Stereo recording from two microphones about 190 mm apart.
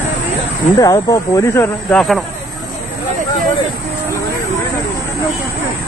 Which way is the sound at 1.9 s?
Centre (ahead or behind).